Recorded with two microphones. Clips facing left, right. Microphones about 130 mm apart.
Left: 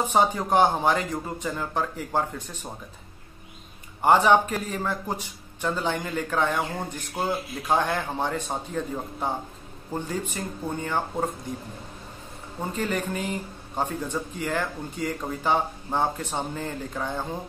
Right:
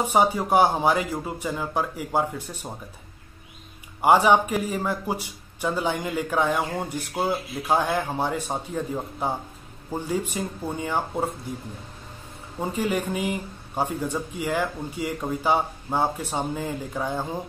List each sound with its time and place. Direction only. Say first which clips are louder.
0.0 s a man's voice: right 1 dB; 10° right (ahead or behind)
4.0 s a man's voice: right 1 dB; 10° right (ahead or behind)
12.5 s a man's voice: right 3 dB; 10° right (ahead or behind)